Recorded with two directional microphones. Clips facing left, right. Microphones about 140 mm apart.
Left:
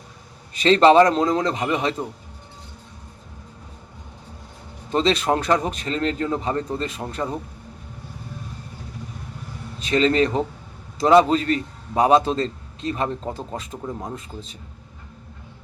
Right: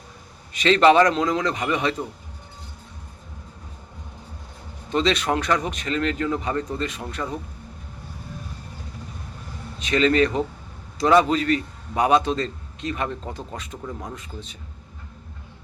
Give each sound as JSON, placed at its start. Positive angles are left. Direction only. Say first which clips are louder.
{"t": 0.6, "sound": "a man's voice", "louder": "left 2 dB", "side_deg": 30}
{"t": 4.9, "sound": "speech", "louder": "left 2 dB", "side_deg": 30}
{"t": 9.9, "sound": "a man's voice", "louder": "left 1 dB", "side_deg": 30}